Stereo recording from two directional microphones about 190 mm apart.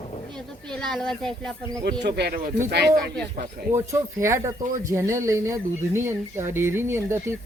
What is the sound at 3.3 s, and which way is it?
Speech, 45° right (ahead or behind).